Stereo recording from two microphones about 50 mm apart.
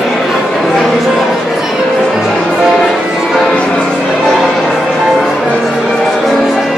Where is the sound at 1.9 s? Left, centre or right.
Centre.